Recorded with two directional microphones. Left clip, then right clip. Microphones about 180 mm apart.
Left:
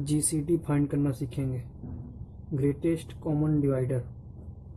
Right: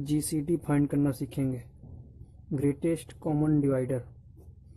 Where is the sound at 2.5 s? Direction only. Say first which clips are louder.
Left 1 dB; 40° right (ahead or behind).